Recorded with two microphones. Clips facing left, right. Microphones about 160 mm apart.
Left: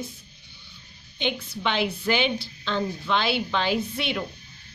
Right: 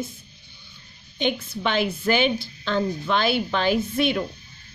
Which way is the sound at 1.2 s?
45° right (ahead or behind).